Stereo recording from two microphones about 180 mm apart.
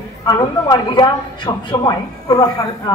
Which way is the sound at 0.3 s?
25° left (ahead or behind).